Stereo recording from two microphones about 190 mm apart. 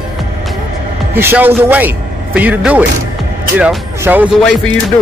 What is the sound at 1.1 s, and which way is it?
A man's voice, 10° right (ahead or behind).